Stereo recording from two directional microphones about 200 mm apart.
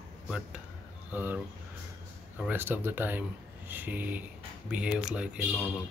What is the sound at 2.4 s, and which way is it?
Speech, 10° right (ahead or behind).